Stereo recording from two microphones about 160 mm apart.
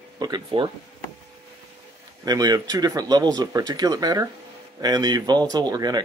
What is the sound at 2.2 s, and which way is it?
Speech, 25° right (ahead or behind).